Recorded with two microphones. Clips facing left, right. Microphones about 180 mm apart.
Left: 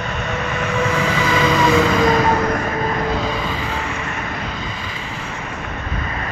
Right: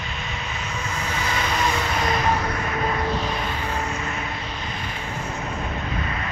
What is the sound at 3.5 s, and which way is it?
Vehicle, 90° left.